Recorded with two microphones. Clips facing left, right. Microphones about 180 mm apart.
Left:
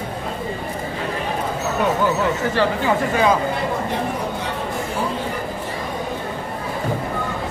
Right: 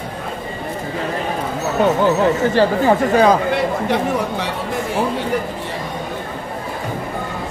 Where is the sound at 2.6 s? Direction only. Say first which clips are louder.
Right 4 dB; 40° right (ahead or behind).